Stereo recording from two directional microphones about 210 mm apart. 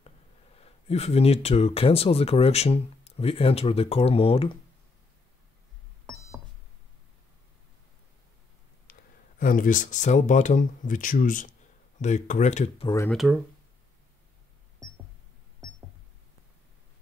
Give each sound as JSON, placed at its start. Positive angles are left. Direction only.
{"t": 0.6, "sound": "speech", "side_deg": 30}
{"t": 9.4, "sound": "speech", "side_deg": 40}
{"t": 12.8, "sound": "speech", "side_deg": 15}
{"t": 13.1, "sound": "speech", "side_deg": 0}